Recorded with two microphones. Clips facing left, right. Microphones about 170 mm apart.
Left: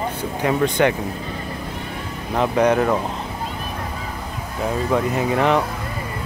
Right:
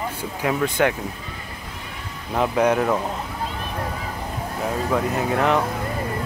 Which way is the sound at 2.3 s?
5° right (ahead or behind).